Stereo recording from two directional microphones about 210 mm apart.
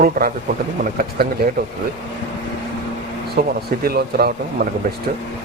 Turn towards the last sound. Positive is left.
turn(degrees=-45)  # may be behind; listen again after turning